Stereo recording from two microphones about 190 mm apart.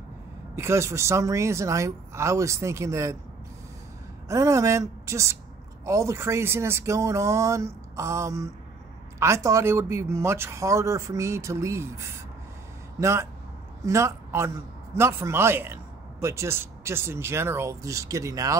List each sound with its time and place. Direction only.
0.6 s a man's voice: 15° right (ahead or behind)
4.3 s a man's voice: 15° right (ahead or behind)